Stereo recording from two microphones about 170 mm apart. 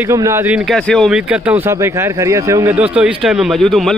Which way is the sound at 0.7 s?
Centre (ahead or behind).